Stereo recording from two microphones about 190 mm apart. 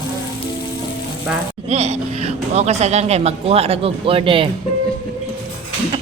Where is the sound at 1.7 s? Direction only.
35° right (ahead or behind).